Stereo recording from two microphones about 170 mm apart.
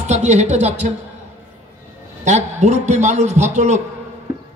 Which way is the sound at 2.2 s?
45° right (ahead or behind).